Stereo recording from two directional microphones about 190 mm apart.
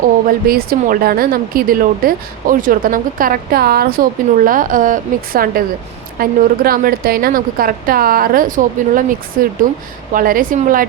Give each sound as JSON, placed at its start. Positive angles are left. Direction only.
{"t": 0.3, "sound": "speech", "side_deg": -50}